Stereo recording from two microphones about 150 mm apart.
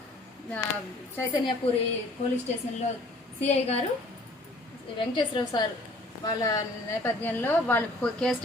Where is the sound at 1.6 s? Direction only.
35° left (ahead or behind).